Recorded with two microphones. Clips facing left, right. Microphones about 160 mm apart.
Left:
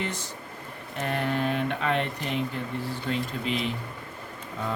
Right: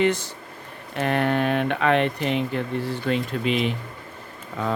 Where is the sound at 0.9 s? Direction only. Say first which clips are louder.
Right 6 dB; 70° right (ahead or behind).